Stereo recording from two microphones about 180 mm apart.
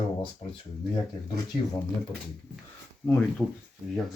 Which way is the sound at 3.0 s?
10° left (ahead or behind).